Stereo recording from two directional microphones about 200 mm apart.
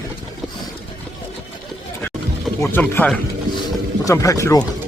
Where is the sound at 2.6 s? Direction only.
10° left (ahead or behind).